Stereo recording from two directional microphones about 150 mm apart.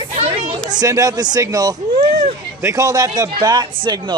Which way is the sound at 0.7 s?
25° right (ahead or behind).